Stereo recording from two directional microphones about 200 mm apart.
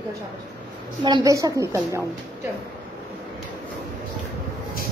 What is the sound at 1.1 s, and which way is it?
Speech, 20° right (ahead or behind).